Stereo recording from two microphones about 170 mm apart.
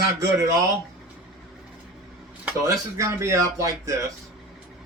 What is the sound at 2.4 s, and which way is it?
Speech, 15° right (ahead or behind).